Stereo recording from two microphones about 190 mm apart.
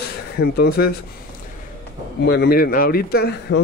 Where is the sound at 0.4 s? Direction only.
55° left (ahead or behind).